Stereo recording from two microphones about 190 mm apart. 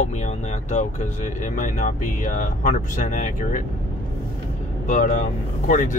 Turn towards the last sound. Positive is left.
turn(degrees=45)  # may be behind; listen again after turning